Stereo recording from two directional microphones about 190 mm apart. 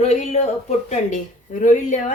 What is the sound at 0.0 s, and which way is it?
Speech, 35° left (ahead or behind).